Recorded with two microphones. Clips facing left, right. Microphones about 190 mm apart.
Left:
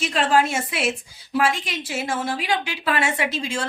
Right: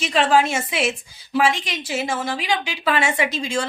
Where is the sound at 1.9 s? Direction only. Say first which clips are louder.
Right 1 dB; 5° left (ahead or behind).